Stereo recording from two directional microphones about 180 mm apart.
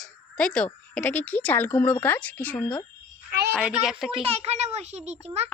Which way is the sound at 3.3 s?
65° right (ahead or behind).